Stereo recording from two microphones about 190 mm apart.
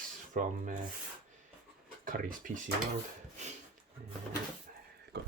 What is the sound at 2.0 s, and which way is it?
Speech, 45° right (ahead or behind).